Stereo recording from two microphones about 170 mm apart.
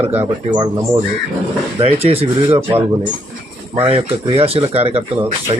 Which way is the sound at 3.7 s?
35° right (ahead or behind).